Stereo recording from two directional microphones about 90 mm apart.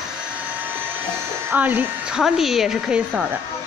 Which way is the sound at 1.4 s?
20° right (ahead or behind).